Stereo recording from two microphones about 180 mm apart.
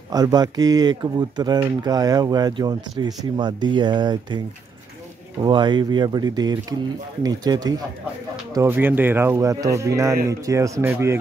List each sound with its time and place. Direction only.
0.1 s speech: 20° right (ahead or behind)
5.4 s speech: 25° right (ahead or behind)
8.5 s speech: 10° right (ahead or behind)